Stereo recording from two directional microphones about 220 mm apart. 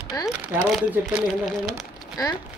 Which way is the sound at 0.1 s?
15° left (ahead or behind).